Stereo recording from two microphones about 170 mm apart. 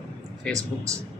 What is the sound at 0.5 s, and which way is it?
Speech, 20° right (ahead or behind).